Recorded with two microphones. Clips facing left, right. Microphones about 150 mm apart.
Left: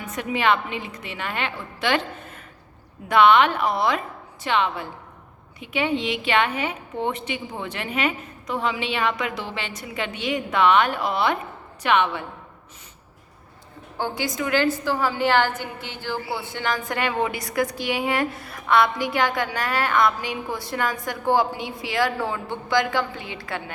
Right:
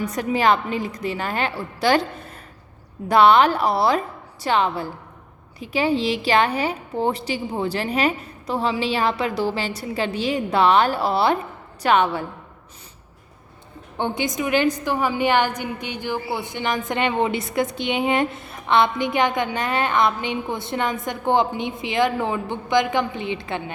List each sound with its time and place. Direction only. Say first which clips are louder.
0.0 s a woman's voice: right 4 dB; 40° right (ahead or behind)
14.0 s a woman's voice: right 3 dB; 20° right (ahead or behind)